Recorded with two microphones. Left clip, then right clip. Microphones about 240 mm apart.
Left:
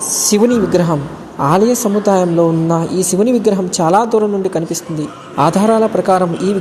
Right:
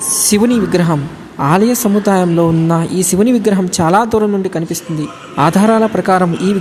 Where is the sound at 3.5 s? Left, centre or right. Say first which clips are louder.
Even; right.